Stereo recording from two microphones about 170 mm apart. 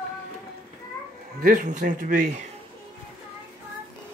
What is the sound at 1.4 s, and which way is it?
Speech, 50° right (ahead or behind).